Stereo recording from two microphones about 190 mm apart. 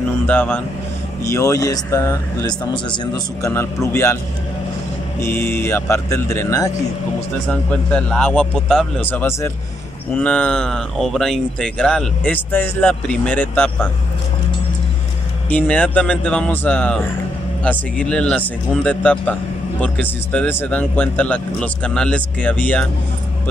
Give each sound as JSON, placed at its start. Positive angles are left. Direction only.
{"t": 0.3, "sound": "speech", "side_deg": 10}
{"t": 5.2, "sound": "a man's voice", "side_deg": 10}
{"t": 15.5, "sound": "speech", "side_deg": 5}